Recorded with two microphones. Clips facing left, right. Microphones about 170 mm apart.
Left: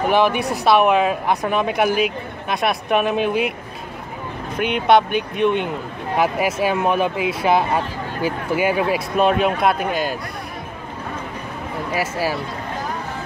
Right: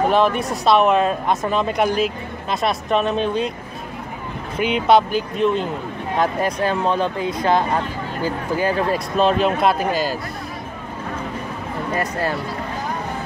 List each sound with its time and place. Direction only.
0.3 s speech: centre (ahead or behind)
4.6 s speech: 55° left (ahead or behind)
6.1 s speech: 5° left (ahead or behind)
11.9 s speech: 5° left (ahead or behind)